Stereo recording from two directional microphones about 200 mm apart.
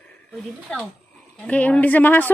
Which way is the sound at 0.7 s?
5° left (ahead or behind).